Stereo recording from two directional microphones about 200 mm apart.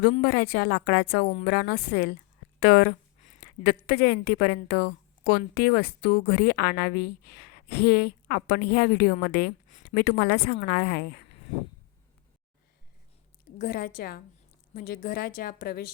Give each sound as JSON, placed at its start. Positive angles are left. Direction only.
{"t": 0.0, "sound": "a woman's voice", "side_deg": 50}
{"t": 13.6, "sound": "a woman's voice", "side_deg": 50}